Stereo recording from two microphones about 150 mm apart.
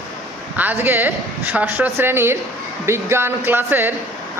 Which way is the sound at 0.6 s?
10° right (ahead or behind).